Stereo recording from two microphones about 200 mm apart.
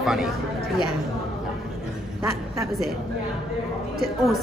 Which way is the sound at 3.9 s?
Centre (ahead or behind).